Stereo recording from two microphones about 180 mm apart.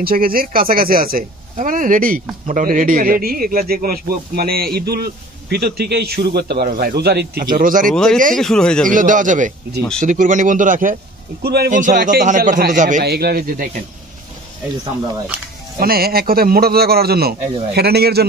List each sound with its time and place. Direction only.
0.0 s speech: 55° right (ahead or behind)
7.5 s a man's voice: 50° right (ahead or behind)
7.9 s speech: 5° left (ahead or behind)
8.8 s a man's voice: 45° right (ahead or behind)
11.4 s speech: 60° right (ahead or behind)
11.7 s a man's voice: 45° right (ahead or behind)
13.0 s speech: 60° right (ahead or behind)
15.8 s speech: 55° right (ahead or behind)